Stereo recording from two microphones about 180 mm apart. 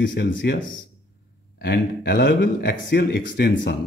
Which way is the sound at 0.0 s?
90° left.